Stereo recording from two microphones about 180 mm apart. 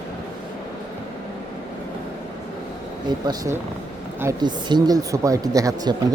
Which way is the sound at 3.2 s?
20° right (ahead or behind).